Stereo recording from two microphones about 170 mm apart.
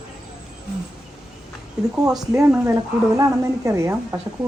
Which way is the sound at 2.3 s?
15° right (ahead or behind).